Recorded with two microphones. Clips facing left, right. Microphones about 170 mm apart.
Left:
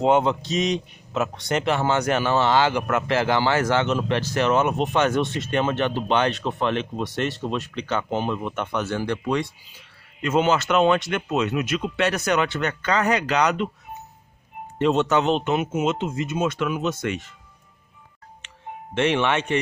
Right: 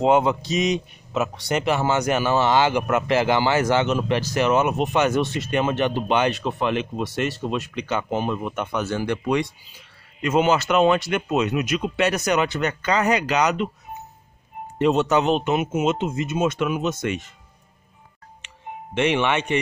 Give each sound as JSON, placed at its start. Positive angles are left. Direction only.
{"t": 0.0, "sound": "a man's voice", "side_deg": -5}
{"t": 14.8, "sound": "a man's voice", "side_deg": -10}
{"t": 18.9, "sound": "a man's voice", "side_deg": -5}